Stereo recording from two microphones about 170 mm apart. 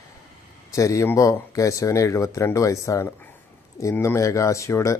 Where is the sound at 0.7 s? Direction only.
20° left (ahead or behind).